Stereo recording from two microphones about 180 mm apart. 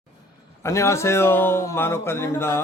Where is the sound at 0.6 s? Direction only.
15° left (ahead or behind).